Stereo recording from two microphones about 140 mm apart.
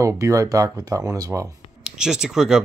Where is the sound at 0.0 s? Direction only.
20° right (ahead or behind).